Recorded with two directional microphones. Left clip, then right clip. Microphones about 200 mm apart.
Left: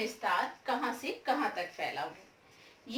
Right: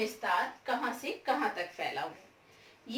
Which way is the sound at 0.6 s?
20° left (ahead or behind).